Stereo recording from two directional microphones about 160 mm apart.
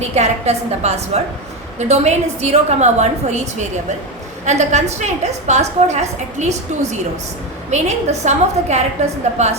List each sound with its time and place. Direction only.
0.1 s a woman's voice: 45° right (ahead or behind)